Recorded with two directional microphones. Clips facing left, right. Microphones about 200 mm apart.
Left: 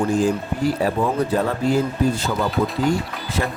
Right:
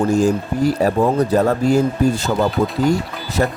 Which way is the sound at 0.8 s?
45° right (ahead or behind).